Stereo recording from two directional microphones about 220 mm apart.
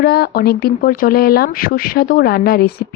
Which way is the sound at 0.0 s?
45° left (ahead or behind).